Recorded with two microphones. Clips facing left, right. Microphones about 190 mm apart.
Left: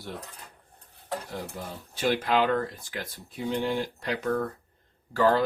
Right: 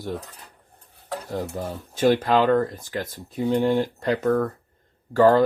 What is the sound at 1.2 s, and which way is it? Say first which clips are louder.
Speech: right 8 dB; 45° right (ahead or behind).